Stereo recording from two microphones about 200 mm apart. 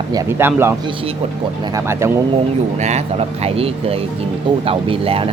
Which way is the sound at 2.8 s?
35° right (ahead or behind).